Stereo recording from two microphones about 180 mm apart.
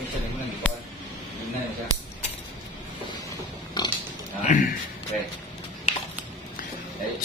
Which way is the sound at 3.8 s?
25° left (ahead or behind).